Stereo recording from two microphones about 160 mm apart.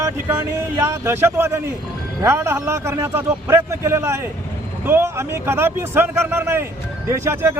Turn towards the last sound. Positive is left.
turn(degrees=-15)  # may be behind; listen again after turning